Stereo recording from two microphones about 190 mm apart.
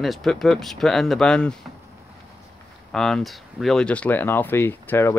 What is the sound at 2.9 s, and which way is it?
Speech, centre (ahead or behind).